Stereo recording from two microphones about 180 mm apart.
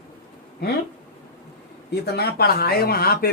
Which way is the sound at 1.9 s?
65° left (ahead or behind).